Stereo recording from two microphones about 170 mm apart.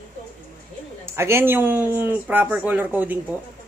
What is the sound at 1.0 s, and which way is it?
Speech, 15° right (ahead or behind).